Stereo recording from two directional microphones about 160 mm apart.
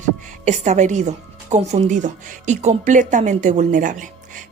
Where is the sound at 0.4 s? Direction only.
45° right (ahead or behind).